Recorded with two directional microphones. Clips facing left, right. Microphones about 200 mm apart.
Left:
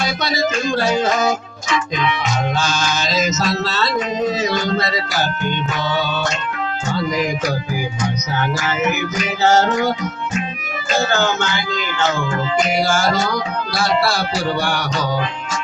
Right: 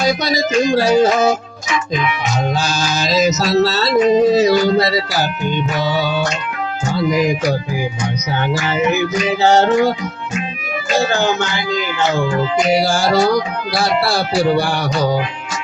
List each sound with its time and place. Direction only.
0.7 s music: 35° right (ahead or behind)
2.6 s music: 35° right (ahead or behind)
5.5 s music: 10° right (ahead or behind)
8.6 s music: 30° right (ahead or behind)
11.1 s music: 35° right (ahead or behind)
12.8 s music: 35° right (ahead or behind)
14.5 s music: 35° right (ahead or behind)